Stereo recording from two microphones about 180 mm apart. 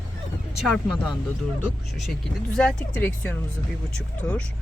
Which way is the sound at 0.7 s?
5° left (ahead or behind).